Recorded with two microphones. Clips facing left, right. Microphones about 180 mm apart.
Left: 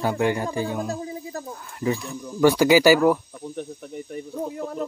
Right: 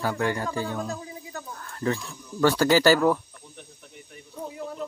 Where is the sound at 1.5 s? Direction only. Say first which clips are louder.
Left 2 dB; 10° left (ahead or behind).